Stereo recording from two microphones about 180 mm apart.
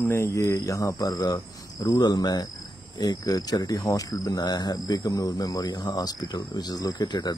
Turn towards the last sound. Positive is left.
turn(degrees=25)  # may be behind; listen again after turning